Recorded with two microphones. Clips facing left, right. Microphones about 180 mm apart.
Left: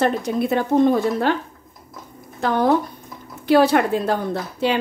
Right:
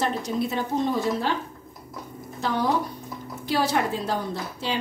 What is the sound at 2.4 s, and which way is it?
A woman's voice, 55° left (ahead or behind).